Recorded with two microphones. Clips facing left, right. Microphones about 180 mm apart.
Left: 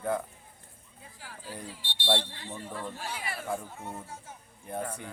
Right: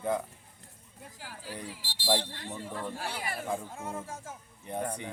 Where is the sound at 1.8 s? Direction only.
90° right.